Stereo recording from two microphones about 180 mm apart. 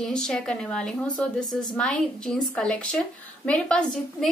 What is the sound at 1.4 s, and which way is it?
Speech, 20° left (ahead or behind).